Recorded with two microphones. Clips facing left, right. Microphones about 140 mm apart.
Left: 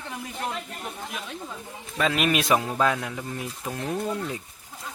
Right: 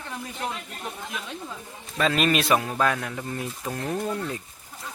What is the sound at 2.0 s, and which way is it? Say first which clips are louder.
Speech: right 1 dB; 10° left (ahead or behind).